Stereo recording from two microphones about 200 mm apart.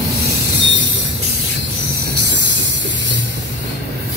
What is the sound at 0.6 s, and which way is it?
Music, 65° right (ahead or behind).